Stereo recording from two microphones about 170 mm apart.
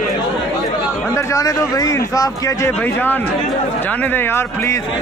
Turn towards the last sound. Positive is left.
turn(degrees=15)  # may be behind; listen again after turning